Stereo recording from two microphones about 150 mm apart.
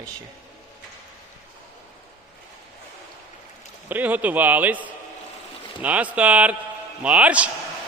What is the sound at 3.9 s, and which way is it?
A man's voice, 10° right (ahead or behind).